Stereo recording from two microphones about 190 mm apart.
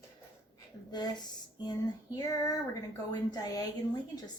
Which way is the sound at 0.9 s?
20° left (ahead or behind).